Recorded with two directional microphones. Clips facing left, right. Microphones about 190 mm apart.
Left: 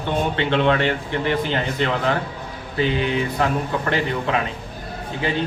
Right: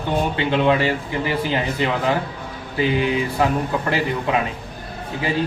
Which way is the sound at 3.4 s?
5° right (ahead or behind).